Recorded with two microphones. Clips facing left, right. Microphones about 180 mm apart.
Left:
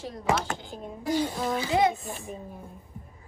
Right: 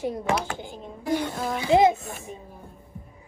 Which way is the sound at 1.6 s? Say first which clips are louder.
Right 6 dB; 20° right (ahead or behind).